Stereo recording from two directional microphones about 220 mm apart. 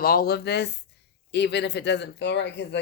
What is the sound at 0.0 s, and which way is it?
Speech, 40° left (ahead or behind).